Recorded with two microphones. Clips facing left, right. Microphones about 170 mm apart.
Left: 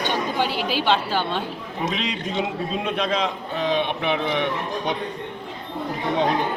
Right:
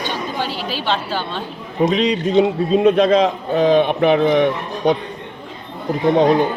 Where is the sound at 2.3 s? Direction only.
40° right (ahead or behind).